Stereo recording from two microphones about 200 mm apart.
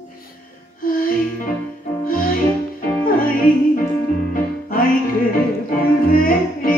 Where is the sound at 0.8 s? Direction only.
45° left (ahead or behind).